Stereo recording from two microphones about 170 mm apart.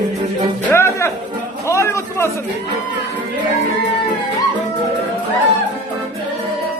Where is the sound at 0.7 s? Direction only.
15° left (ahead or behind).